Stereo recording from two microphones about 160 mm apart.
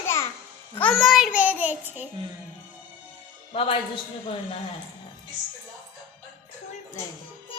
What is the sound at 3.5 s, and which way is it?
Speech, 35° left (ahead or behind).